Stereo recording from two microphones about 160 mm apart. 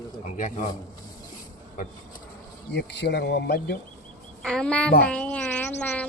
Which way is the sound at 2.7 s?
90° left.